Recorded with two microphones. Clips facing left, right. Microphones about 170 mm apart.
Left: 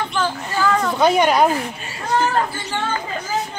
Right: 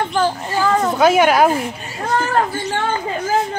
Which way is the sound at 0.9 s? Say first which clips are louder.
Right 3 dB; 5° right (ahead or behind).